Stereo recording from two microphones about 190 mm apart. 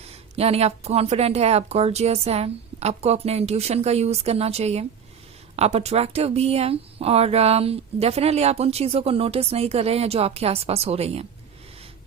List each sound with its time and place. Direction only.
0.1 s speech: 30° right (ahead or behind)